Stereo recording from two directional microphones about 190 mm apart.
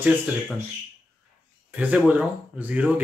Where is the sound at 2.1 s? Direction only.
10° right (ahead or behind).